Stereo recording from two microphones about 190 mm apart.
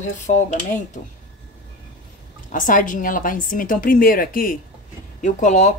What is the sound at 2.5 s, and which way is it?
A woman's voice, 45° left (ahead or behind).